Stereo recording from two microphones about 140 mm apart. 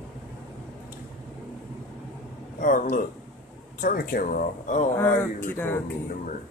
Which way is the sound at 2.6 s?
70° left (ahead or behind).